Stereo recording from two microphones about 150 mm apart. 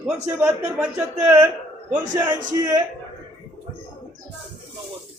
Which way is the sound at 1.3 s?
20° right (ahead or behind).